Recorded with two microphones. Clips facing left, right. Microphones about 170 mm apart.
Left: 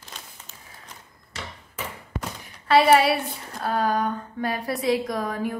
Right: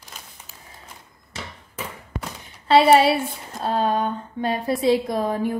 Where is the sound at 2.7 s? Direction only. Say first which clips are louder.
Right 3 dB; 25° right (ahead or behind).